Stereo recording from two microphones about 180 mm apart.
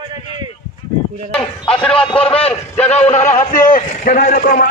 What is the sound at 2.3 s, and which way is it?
A man's voice, 30° left (ahead or behind).